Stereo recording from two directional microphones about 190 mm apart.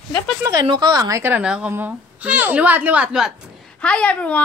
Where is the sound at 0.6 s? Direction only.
25° right (ahead or behind); by 4.4 s 5° left (ahead or behind).